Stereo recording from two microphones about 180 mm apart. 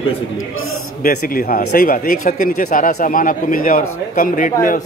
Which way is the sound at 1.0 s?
50° left (ahead or behind).